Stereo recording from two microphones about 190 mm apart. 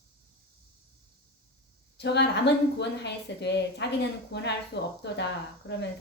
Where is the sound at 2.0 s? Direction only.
65° left (ahead or behind).